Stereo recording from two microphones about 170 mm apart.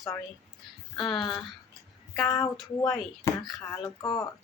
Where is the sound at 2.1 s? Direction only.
20° left (ahead or behind).